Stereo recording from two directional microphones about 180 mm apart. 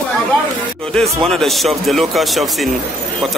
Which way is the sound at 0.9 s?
Centre (ahead or behind).